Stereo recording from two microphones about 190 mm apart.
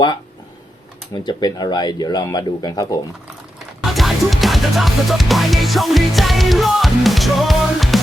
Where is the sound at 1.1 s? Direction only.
20° left (ahead or behind).